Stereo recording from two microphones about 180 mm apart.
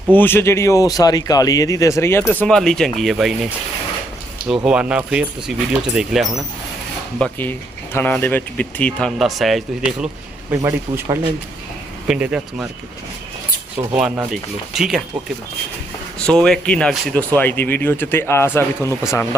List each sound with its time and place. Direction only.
0.1 s speech: 10° left (ahead or behind)
4.6 s speech: 5° right (ahead or behind)
7.2 s speech: 10° left (ahead or behind)
10.5 s speech: 15° right (ahead or behind)
13.9 s speech: 5° right (ahead or behind)
16.1 s speech: 5° left (ahead or behind)